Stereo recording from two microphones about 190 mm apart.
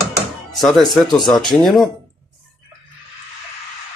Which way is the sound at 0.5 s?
Centre (ahead or behind).